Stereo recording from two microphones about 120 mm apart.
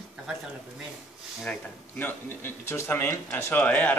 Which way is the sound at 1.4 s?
15° left (ahead or behind).